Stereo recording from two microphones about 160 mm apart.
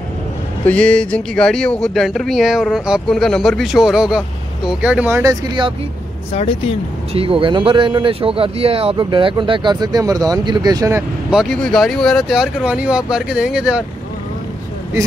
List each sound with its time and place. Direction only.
0.7 s speech: 5° left (ahead or behind); by 5.7 s 25° right (ahead or behind)
6.3 s speech: 35° left (ahead or behind)
7.2 s speech: 35° right (ahead or behind); by 11.1 s 20° right (ahead or behind)
11.2 s speech: centre (ahead or behind)